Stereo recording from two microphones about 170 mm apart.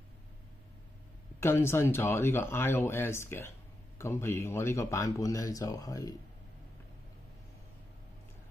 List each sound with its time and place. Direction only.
1.4 s speech: 15° left (ahead or behind)